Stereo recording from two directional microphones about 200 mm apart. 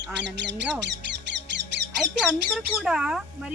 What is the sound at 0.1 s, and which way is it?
Speech, 60° right (ahead or behind).